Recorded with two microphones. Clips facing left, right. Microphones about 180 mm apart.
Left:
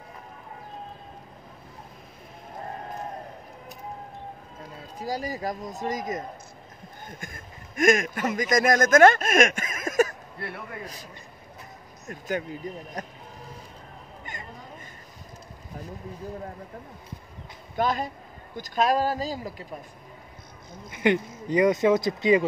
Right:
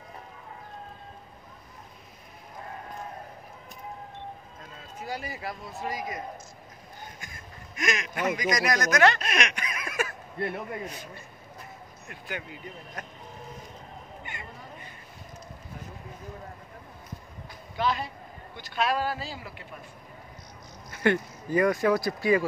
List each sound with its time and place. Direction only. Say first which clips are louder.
4.6 s a man's voice: left 5 dB; 35° left (ahead or behind)
10.4 s a man's voice: right 5 dB; 20° right (ahead or behind)
12.1 s speech: left 8 dB; 40° left (ahead or behind)
17.7 s speech: left 3 dB; 45° left (ahead or behind)
20.9 s speech: left 2 dB; 15° left (ahead or behind)